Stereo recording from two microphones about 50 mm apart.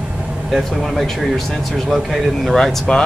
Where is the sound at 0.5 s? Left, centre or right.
Centre.